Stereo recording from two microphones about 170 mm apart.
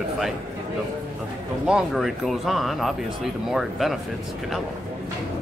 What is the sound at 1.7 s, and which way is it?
Speech, centre (ahead or behind).